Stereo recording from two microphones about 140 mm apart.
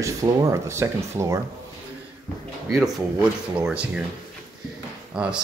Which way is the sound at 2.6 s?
Centre (ahead or behind).